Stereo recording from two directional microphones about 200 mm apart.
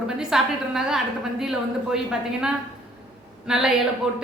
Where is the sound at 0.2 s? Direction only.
Centre (ahead or behind).